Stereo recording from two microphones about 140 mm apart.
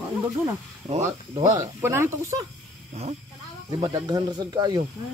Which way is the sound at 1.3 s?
30° right (ahead or behind).